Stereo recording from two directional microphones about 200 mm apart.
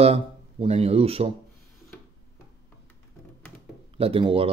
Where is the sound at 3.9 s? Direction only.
30° right (ahead or behind).